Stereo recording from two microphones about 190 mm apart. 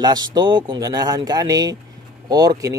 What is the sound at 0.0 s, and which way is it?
Speech, 20° right (ahead or behind).